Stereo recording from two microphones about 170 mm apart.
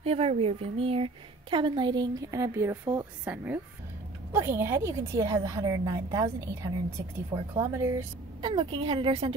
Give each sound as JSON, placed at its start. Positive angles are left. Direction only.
{"t": 0.0, "sound": "a woman's voice", "side_deg": -35}